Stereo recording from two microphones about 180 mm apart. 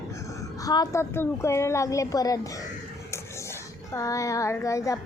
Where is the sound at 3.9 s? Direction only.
20° left (ahead or behind).